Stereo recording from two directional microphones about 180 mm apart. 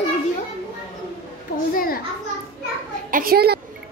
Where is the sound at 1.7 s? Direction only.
55° left (ahead or behind).